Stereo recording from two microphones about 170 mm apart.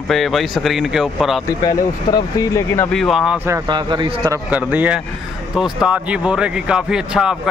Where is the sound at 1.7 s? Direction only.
25° left (ahead or behind).